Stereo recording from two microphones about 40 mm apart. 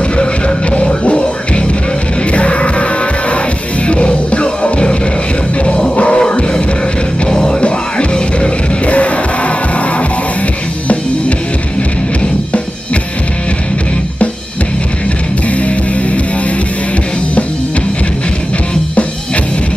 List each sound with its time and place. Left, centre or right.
0.2 s music: left
15.5 s music: left